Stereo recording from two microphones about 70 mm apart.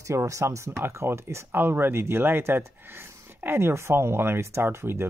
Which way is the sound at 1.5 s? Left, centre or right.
Right.